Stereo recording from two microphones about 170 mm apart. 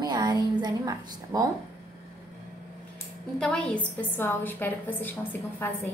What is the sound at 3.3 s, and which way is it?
A woman's voice, 5° left (ahead or behind).